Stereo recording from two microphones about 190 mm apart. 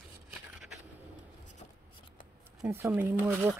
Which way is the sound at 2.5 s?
10° right (ahead or behind).